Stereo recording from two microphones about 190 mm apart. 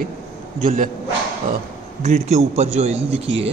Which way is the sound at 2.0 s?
35° right (ahead or behind).